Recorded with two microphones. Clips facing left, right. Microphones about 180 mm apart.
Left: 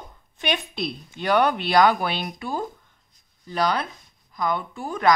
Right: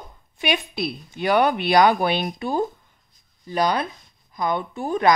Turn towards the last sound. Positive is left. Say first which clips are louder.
# right 3 dB
turn(degrees=-20)  # may be behind; listen again after turning